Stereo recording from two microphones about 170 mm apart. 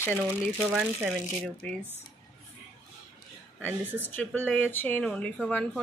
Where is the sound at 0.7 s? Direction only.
5° right (ahead or behind).